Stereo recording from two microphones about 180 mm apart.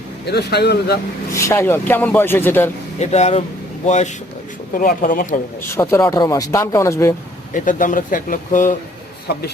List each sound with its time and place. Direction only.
0.3 s speech: 65° left (ahead or behind)
1.3 s speech: 15° left (ahead or behind)
3.0 s speech: 35° left (ahead or behind)
5.6 s speech: 15° left (ahead or behind)
7.5 s speech: 45° left (ahead or behind)